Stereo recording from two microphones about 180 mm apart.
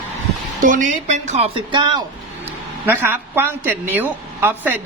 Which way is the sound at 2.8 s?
10° right (ahead or behind).